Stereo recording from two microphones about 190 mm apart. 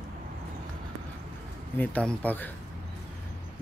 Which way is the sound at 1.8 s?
5° left (ahead or behind).